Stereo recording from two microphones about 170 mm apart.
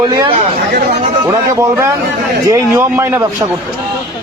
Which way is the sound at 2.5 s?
15° right (ahead or behind).